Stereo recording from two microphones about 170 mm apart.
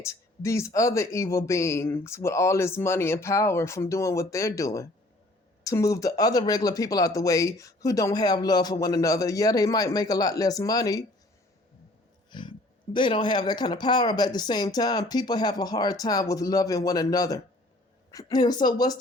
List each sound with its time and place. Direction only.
0.0 s speech: 15° left (ahead or behind)
12.3 s speech: 25° left (ahead or behind)